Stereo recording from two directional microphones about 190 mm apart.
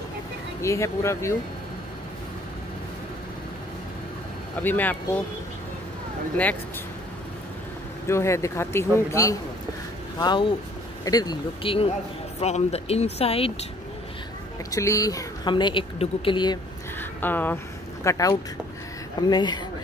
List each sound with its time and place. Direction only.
0.6 s a man's voice: 15° left (ahead or behind)
4.6 s a man's voice: 10° left (ahead or behind)
8.1 s a man's voice: 15° left (ahead or behind); by 13.7 s 30° left (ahead or behind)
14.7 s speech: 15° left (ahead or behind)
17.0 s a man's voice: 10° left (ahead or behind)